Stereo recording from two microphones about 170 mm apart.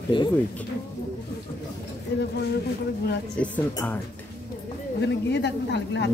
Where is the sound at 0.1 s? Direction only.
30° left (ahead or behind).